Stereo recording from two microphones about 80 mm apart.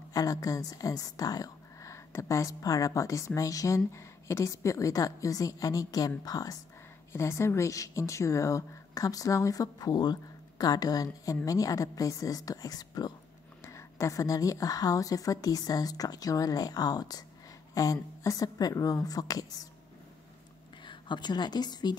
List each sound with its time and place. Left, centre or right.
0.1 s a woman's voice: left
7.1 s a woman's voice: left
13.6 s a woman's voice: left
20.8 s a woman's voice: left